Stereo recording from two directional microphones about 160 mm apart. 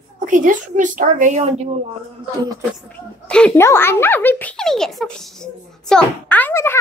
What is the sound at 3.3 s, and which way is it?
A child's voice, 5° left (ahead or behind).